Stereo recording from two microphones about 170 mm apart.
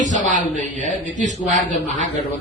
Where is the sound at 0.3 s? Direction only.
50° right (ahead or behind).